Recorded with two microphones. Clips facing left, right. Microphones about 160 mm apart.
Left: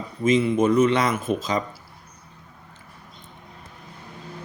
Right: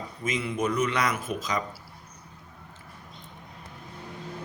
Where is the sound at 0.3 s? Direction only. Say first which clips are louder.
Left 10 dB; 25° left (ahead or behind).